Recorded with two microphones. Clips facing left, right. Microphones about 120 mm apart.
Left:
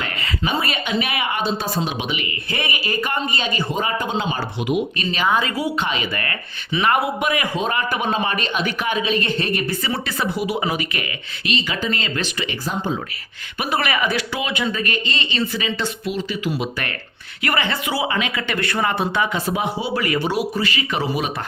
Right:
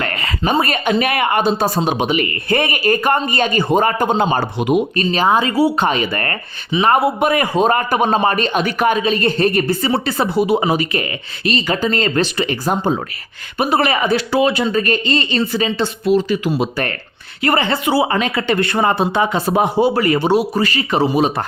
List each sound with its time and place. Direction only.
0.0 s speech: 50° right (ahead or behind); by 5.7 s 30° right (ahead or behind)
5.7 s speech: 45° right (ahead or behind)
9.6 s speech: 30° right (ahead or behind); by 13.0 s 45° right (ahead or behind)
13.6 s speech: 30° right (ahead or behind)
20.5 s speech: 40° right (ahead or behind)